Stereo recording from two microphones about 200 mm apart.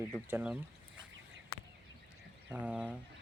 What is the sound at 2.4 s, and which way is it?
Speech, 5° right (ahead or behind).